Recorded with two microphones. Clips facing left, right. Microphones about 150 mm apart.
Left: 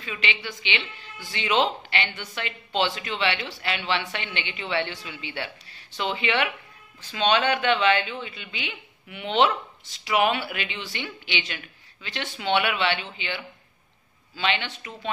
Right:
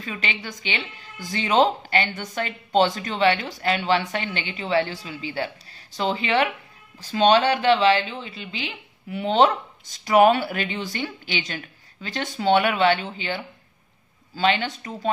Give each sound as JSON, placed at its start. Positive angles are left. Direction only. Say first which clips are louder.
{"t": 0.0, "sound": "speech", "louder": "right 1 dB", "side_deg": -40}